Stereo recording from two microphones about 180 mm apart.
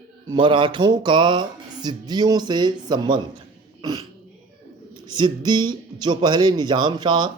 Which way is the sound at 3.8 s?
20° right (ahead or behind).